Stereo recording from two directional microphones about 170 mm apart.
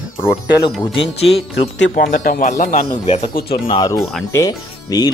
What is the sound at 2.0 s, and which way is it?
Speech, 55° left (ahead or behind).